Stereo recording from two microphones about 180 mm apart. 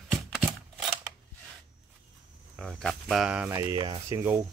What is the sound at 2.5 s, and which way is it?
Speech, centre (ahead or behind).